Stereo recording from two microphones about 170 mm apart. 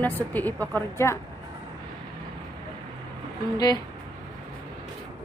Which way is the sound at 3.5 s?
25° left (ahead or behind).